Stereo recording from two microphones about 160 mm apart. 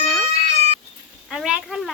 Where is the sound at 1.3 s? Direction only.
5° right (ahead or behind).